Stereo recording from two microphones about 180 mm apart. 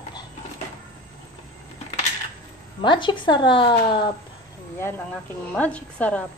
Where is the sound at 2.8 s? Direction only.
25° left (ahead or behind).